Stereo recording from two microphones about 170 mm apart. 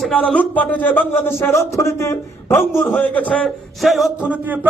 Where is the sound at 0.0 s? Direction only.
5° left (ahead or behind).